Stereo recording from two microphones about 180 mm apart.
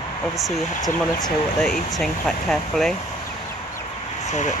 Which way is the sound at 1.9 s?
5° left (ahead or behind).